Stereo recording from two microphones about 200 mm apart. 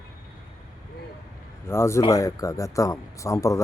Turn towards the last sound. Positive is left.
turn(degrees=15)  # may be behind; listen again after turning